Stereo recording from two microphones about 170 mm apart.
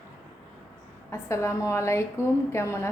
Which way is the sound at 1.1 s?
15° left (ahead or behind).